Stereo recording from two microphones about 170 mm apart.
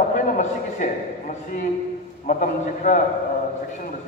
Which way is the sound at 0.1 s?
50° left (ahead or behind).